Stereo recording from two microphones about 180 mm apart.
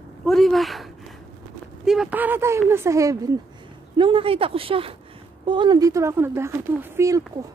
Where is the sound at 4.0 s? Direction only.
30° right (ahead or behind).